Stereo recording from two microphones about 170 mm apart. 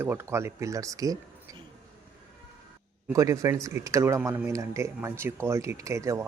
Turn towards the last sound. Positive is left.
turn(degrees=-15)  # may be behind; listen again after turning